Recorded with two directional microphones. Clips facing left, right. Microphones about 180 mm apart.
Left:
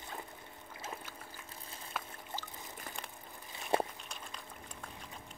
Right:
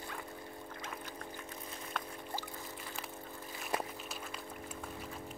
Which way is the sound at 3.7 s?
30° left (ahead or behind).